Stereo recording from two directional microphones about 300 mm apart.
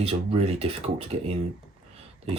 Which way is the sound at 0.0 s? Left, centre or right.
Centre.